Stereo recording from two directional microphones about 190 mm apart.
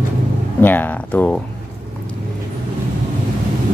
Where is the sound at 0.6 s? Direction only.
10° left (ahead or behind).